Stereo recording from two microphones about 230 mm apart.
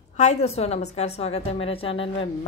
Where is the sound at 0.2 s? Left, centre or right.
Left.